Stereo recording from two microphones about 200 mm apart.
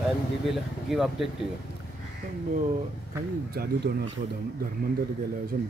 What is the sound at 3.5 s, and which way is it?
Speech, 55° right (ahead or behind).